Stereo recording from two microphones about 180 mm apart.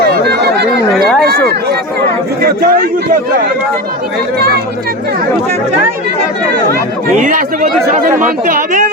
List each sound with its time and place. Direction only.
0.0 s chatter: 60° right (ahead or behind)
0.9 s a sound: 5° left (ahead or behind)
2.4 s a man's voice: 55° right (ahead or behind)
4.4 s speech: 60° right (ahead or behind)
7.2 s speech: 45° right (ahead or behind)